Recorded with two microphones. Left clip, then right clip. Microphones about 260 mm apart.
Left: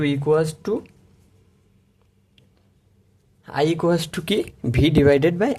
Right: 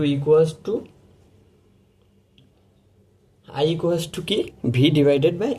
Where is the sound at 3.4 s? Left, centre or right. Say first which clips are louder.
Left 1 dB; left.